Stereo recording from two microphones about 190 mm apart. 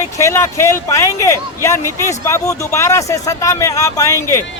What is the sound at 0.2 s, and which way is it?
A man's voice, 15° left (ahead or behind).